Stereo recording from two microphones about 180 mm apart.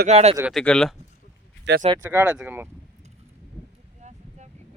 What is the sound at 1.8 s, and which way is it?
Speech, 40° right (ahead or behind).